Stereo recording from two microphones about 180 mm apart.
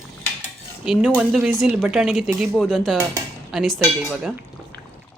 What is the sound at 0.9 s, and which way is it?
Speech, 5° right (ahead or behind).